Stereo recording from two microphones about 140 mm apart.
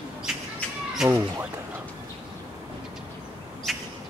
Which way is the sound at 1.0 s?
Centre (ahead or behind).